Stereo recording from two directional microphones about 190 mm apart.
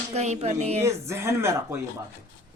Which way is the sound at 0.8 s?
15° right (ahead or behind).